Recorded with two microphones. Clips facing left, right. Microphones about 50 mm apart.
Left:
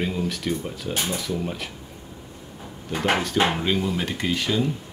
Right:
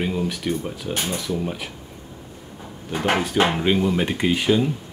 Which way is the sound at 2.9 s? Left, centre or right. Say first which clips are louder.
Right 1 dB; centre.